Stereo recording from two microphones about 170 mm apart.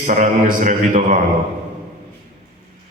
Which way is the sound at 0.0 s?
50° right (ahead or behind).